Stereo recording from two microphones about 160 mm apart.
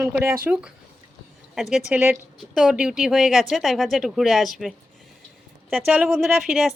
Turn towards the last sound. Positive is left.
turn(degrees=-5)  # may be behind; listen again after turning